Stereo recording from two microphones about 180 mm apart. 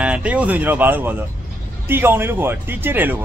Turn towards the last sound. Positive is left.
turn(degrees=-10)  # may be behind; listen again after turning